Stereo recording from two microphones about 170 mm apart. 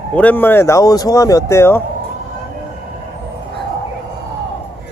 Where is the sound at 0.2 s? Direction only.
10° left (ahead or behind).